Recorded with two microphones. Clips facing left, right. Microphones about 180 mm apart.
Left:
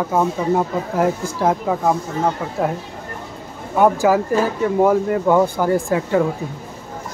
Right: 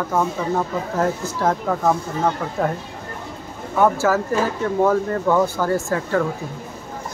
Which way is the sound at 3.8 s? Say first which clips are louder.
Left 3 dB; 15° left (ahead or behind).